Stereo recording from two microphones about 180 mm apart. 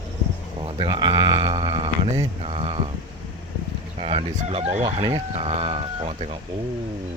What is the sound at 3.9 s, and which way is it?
Speech, 35° right (ahead or behind).